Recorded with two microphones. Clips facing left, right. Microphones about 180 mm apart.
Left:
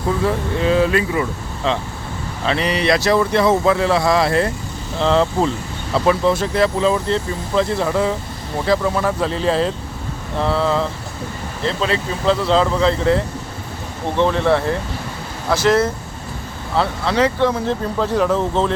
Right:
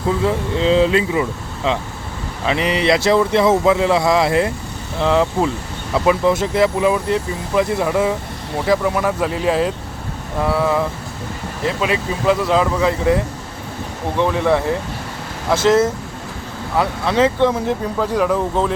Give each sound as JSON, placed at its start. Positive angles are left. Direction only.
{"t": 0.3, "sound": "speech", "side_deg": -20}